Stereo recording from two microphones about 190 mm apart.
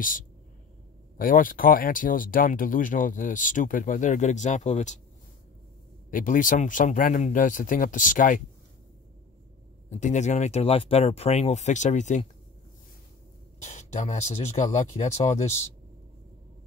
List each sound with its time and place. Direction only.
1.1 s speech: 45° left (ahead or behind)
6.0 s speech: 45° left (ahead or behind)
9.8 s speech: 40° left (ahead or behind)
13.6 s speech: 40° left (ahead or behind)